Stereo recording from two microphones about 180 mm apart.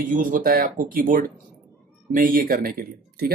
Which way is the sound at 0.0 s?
45° right (ahead or behind).